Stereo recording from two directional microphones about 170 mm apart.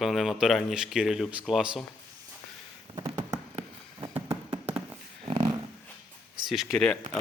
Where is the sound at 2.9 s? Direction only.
25° right (ahead or behind).